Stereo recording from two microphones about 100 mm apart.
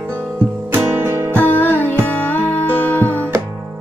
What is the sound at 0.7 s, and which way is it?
Music, 20° right (ahead or behind).